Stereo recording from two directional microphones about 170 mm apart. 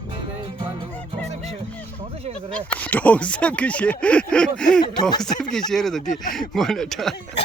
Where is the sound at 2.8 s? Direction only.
10° left (ahead or behind).